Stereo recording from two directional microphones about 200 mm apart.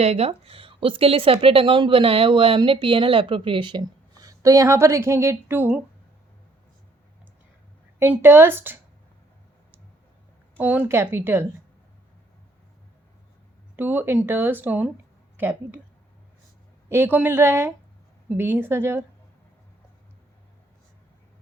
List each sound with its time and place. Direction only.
0.0 s speech: 30° right (ahead or behind); by 5.8 s 10° right (ahead or behind)
7.9 s speech: 10° right (ahead or behind)
10.6 s speech: 10° right (ahead or behind)
13.7 s speech: 10° right (ahead or behind)
16.9 s speech: 10° right (ahead or behind)